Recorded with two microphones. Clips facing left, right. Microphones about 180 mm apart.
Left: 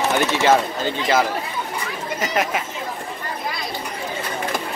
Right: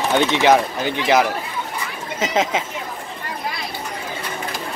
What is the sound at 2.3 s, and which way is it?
Speech, 20° right (ahead or behind).